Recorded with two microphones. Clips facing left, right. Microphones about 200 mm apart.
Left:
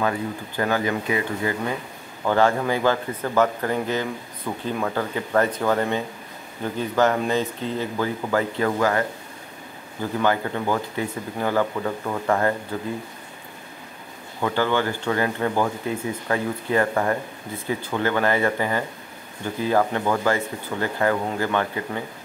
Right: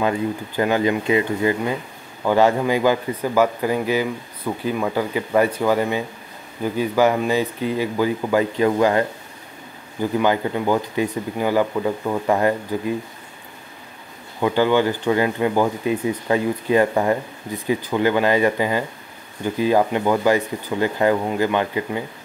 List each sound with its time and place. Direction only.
0.6 s speech: 20° right (ahead or behind)
10.2 s speech: 15° right (ahead or behind)
14.4 s speech: 15° right (ahead or behind)